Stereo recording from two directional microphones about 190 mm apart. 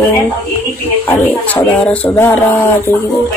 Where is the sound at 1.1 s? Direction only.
10° left (ahead or behind).